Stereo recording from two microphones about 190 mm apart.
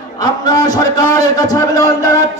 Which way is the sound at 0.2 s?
20° left (ahead or behind).